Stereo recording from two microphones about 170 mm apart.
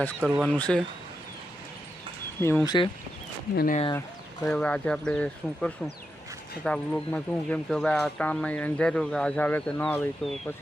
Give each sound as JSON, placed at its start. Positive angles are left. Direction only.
{"t": 0.2, "sound": "speech", "side_deg": -5}
{"t": 0.5, "sound": "speech", "side_deg": 5}
{"t": 2.4, "sound": "speech", "side_deg": 15}
{"t": 3.5, "sound": "speech", "side_deg": 65}
{"t": 4.4, "sound": "speech", "side_deg": 5}